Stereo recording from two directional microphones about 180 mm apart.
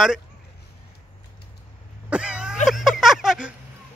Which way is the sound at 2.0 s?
5° right (ahead or behind).